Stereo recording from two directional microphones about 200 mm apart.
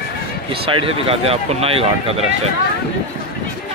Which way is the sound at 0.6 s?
30° right (ahead or behind).